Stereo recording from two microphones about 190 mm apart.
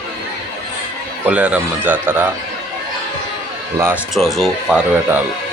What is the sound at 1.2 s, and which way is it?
Speech, 5° right (ahead or behind).